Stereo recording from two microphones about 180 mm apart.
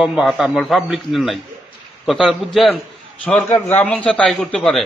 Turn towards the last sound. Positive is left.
turn(degrees=0)  # may be behind; listen again after turning